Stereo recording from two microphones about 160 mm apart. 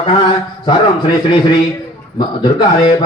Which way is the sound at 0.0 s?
30° left (ahead or behind).